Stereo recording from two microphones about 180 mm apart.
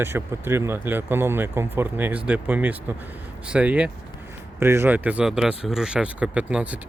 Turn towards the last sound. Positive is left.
turn(degrees=-5)  # may be behind; listen again after turning